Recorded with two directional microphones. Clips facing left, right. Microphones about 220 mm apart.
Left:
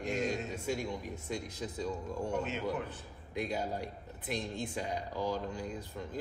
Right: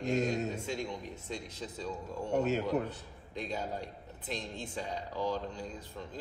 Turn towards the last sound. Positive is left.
turn(degrees=10)  # may be behind; listen again after turning